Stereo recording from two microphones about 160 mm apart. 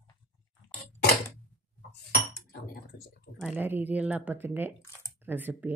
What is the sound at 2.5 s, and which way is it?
Speech, 70° left (ahead or behind).